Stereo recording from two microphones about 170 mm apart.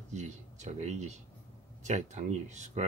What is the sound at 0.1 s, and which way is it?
Speech, 45° right (ahead or behind).